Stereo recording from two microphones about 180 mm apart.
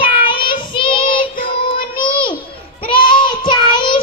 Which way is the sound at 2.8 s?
25° left (ahead or behind).